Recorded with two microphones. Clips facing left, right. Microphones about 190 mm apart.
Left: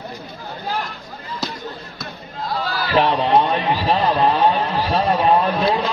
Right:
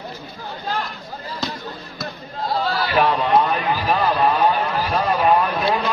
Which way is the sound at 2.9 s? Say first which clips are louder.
Left 2 dB; 25° left (ahead or behind).